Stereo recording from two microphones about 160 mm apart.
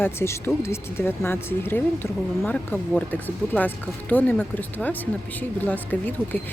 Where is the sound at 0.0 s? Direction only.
15° left (ahead or behind).